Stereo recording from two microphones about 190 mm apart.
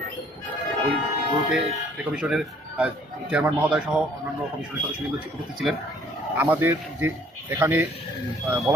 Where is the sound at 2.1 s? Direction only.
5° right (ahead or behind).